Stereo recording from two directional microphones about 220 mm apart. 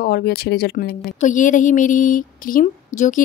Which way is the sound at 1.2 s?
35° left (ahead or behind).